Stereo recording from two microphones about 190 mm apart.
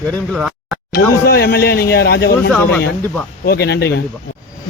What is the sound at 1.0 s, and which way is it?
Speech, 85° left.